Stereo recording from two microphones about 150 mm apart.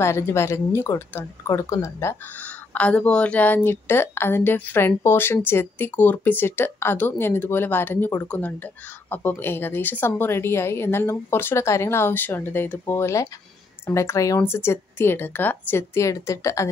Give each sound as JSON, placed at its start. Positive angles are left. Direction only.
{"t": 0.0, "sound": "speech", "side_deg": 15}